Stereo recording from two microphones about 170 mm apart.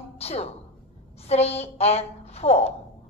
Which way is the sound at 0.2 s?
35° left (ahead or behind).